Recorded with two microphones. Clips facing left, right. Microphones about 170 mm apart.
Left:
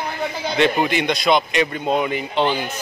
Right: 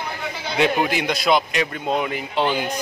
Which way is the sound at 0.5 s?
5° right (ahead or behind).